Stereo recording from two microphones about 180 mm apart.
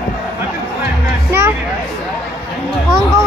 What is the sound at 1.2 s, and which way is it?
Music, 15° right (ahead or behind).